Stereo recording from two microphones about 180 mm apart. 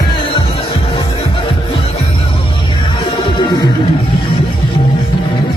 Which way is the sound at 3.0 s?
25° left (ahead or behind).